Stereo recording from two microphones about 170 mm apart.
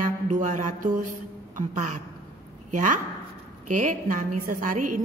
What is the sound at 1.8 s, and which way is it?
A woman's voice, 45° right (ahead or behind).